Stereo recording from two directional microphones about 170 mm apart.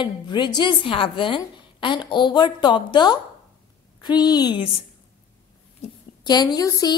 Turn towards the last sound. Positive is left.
turn(degrees=20)  # may be behind; listen again after turning